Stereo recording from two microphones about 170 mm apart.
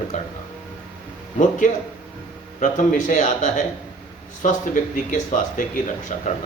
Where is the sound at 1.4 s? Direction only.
50° left (ahead or behind).